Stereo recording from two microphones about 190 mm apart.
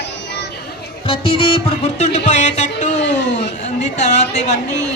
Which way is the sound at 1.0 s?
30° left (ahead or behind).